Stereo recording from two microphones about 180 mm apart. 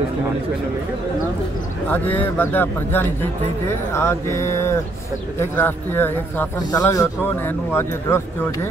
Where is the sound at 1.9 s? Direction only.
10° left (ahead or behind).